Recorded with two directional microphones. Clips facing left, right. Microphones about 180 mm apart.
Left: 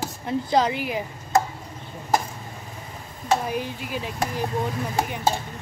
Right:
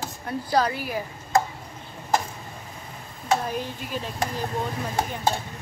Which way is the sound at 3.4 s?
10° left (ahead or behind).